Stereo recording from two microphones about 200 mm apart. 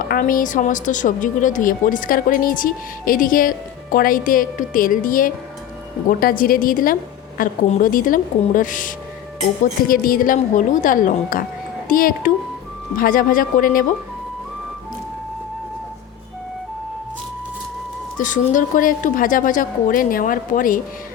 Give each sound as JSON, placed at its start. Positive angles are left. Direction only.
{"t": 0.1, "sound": "a woman's voice", "side_deg": 45}
{"t": 18.2, "sound": "a woman's voice", "side_deg": 40}